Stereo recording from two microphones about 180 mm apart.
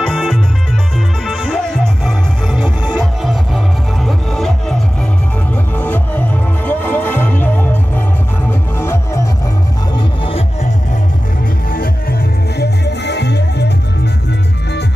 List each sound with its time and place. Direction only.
0.0 s music: centre (ahead or behind)
5.8 s music: 10° left (ahead or behind)
9.9 s music: 30° left (ahead or behind)
11.7 s music: 55° left (ahead or behind)